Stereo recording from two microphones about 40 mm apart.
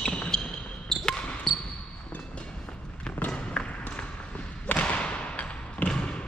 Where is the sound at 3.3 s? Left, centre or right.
Left.